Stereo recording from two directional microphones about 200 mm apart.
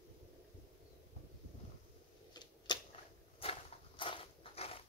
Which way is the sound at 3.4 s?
25° left (ahead or behind).